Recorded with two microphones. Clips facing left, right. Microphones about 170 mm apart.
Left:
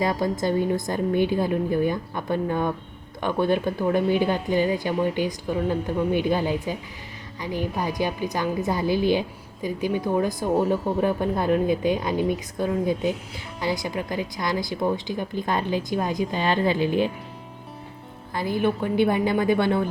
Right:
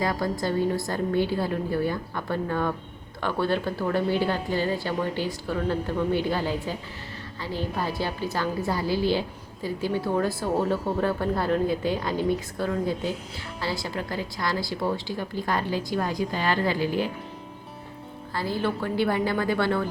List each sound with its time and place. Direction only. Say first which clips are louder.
0.0 s speech: left 3 dB; 20° left (ahead or behind)
18.3 s speech: left 4 dB; 20° left (ahead or behind)